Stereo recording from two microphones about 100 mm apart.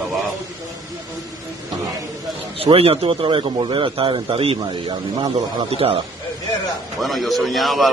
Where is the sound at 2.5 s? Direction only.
70° right (ahead or behind).